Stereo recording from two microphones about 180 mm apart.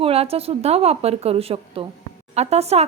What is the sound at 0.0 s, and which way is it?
Speech, 35° right (ahead or behind).